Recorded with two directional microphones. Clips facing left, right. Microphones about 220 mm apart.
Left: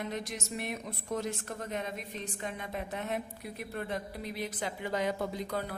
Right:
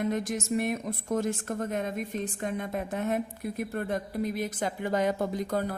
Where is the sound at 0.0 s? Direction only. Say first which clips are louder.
Right 8 dB; 50° right (ahead or behind).